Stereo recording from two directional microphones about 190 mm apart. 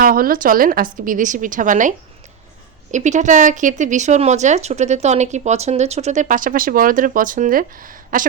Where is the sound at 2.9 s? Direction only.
40° right (ahead or behind).